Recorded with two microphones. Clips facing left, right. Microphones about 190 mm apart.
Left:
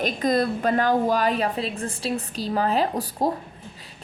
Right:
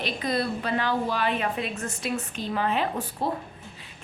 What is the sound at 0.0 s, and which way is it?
A woman's voice, 45° left (ahead or behind).